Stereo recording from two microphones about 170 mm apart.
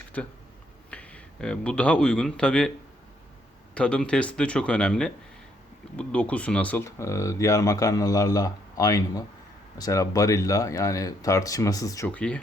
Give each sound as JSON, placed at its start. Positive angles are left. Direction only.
{"t": 0.2, "sound": "speech", "side_deg": 5}
{"t": 3.8, "sound": "speech", "side_deg": 5}
{"t": 12.0, "sound": "speech", "side_deg": 10}